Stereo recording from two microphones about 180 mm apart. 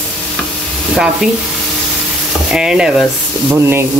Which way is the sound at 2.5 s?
5° right (ahead or behind).